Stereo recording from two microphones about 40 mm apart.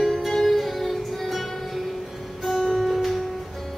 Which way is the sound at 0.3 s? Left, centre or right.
Centre.